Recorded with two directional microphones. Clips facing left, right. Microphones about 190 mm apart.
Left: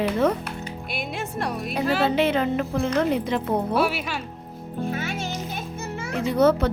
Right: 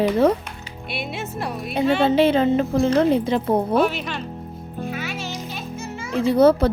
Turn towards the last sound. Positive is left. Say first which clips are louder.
# right 4 dB
turn(degrees=-35)  # may be behind; listen again after turning